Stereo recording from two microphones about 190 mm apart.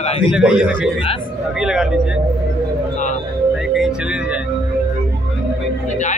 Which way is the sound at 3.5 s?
5° right (ahead or behind).